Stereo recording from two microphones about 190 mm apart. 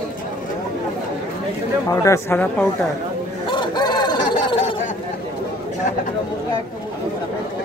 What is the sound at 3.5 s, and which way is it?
Chicken, 25° left (ahead or behind).